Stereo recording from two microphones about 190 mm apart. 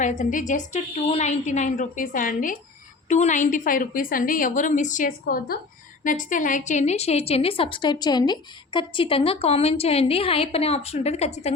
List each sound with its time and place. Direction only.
0.0 s a woman's voice: 40° left (ahead or behind)
5.2 s a woman's voice: 50° left (ahead or behind); by 11.5 s 35° left (ahead or behind)